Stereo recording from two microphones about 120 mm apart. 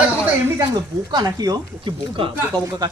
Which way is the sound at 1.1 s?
35° right (ahead or behind).